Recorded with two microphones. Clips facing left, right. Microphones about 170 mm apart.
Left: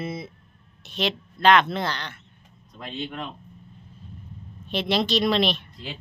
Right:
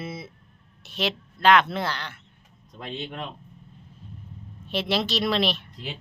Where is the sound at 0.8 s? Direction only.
5° right (ahead or behind).